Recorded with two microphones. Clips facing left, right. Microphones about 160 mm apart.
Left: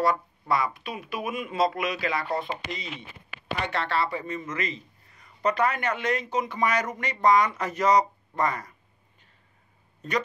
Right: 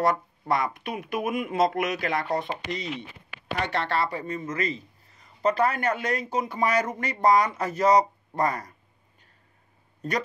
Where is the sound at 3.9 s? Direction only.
40° right (ahead or behind).